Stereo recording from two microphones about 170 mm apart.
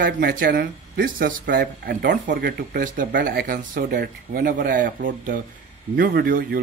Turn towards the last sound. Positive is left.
turn(degrees=-60)  # may be behind; listen again after turning